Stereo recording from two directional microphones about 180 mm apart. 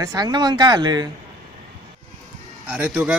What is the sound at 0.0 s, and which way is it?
A man's voice, 20° right (ahead or behind).